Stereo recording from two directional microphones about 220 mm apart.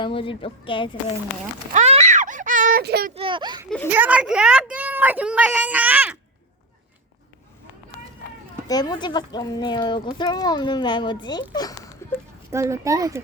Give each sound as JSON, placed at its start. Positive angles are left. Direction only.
{"t": 0.0, "sound": "speech", "side_deg": 25}
{"t": 1.7, "sound": "speech", "side_deg": -30}
{"t": 3.2, "sound": "a child's voice", "side_deg": -20}
{"t": 3.8, "sound": "a woman's voice", "side_deg": -5}
{"t": 8.6, "sound": "a child's voice", "side_deg": 15}
{"t": 12.5, "sound": "a woman's voice", "side_deg": -15}